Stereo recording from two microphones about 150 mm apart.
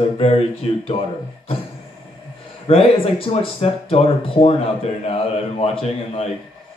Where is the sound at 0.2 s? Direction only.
45° left (ahead or behind).